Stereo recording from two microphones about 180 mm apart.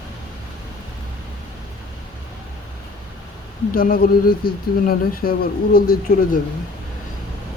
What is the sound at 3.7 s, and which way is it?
Speech, 55° left (ahead or behind).